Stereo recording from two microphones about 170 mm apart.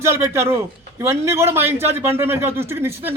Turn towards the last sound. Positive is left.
turn(degrees=-15)  # may be behind; listen again after turning